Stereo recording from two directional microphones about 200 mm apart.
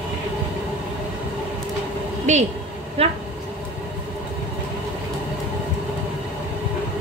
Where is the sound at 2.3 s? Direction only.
35° right (ahead or behind).